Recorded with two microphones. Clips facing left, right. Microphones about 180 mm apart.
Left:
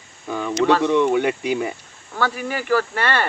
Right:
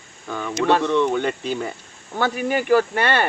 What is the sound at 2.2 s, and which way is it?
Speech, 20° right (ahead or behind).